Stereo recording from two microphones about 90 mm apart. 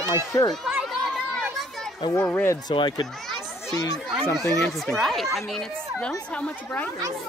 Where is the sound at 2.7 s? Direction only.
60° left (ahead or behind).